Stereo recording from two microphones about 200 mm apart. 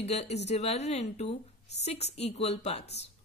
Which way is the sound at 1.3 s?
60° left (ahead or behind).